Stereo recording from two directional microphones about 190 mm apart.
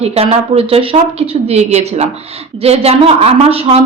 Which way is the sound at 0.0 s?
30° right (ahead or behind).